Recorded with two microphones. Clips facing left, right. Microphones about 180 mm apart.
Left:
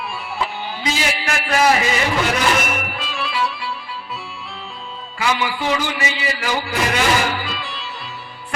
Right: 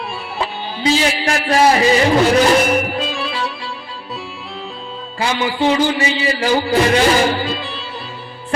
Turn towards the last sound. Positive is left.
turn(degrees=-35)  # may be behind; listen again after turning